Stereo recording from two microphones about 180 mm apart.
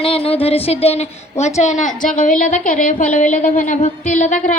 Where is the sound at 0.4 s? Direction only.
35° left (ahead or behind).